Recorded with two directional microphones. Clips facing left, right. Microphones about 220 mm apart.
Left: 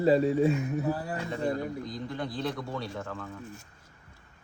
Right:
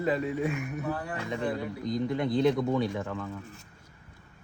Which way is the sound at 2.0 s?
20° right (ahead or behind).